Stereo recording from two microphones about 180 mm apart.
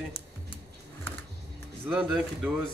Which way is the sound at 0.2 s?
30° left (ahead or behind).